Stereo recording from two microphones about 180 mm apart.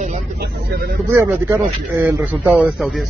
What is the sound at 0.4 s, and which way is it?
Speech, 55° right (ahead or behind).